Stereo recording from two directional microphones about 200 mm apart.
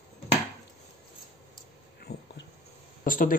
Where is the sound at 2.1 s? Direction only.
55° left (ahead or behind).